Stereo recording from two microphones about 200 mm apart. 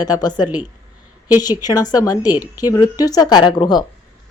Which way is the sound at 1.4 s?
20° left (ahead or behind).